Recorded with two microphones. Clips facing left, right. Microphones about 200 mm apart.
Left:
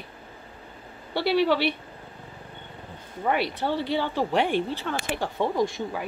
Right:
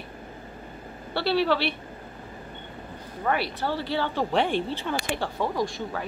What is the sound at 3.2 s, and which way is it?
Speech, 20° left (ahead or behind).